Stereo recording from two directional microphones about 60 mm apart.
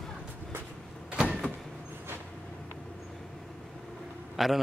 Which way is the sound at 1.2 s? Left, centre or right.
Centre.